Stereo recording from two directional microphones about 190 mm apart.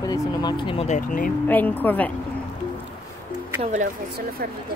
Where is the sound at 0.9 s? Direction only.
45° left (ahead or behind).